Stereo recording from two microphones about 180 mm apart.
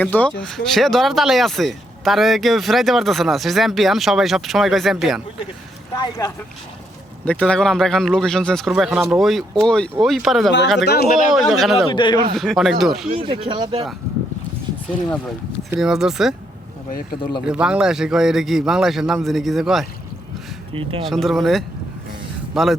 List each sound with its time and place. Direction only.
0.0 s speech: 10° left (ahead or behind)
6.0 s speech: 20° left (ahead or behind)
7.3 s speech: 5° left (ahead or behind)
10.8 s speech: 60° left (ahead or behind)
11.3 s speech: centre (ahead or behind)
11.9 s speech: 25° left (ahead or behind)
12.3 s speech: centre (ahead or behind)
13.1 s speech: 30° right (ahead or behind)
15.8 s speech: centre (ahead or behind)
17.4 s speech: 5° right (ahead or behind)
21.0 s speech: centre (ahead or behind)